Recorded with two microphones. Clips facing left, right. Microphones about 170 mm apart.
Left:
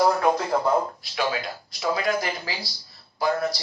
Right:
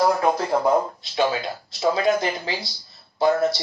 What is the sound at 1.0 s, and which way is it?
Speech, 20° right (ahead or behind).